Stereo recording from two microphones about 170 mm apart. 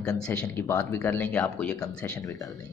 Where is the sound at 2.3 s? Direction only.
20° left (ahead or behind).